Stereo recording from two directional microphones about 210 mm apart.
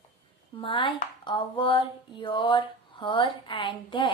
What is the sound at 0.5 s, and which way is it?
Speech, 25° left (ahead or behind).